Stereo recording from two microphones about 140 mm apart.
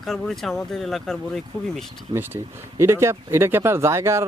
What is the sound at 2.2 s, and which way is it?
Speech, 15° right (ahead or behind).